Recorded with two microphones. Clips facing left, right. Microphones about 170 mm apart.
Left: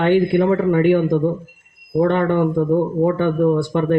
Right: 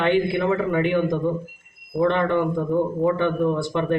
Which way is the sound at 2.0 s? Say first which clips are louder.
Left 2 dB; 45° left (ahead or behind).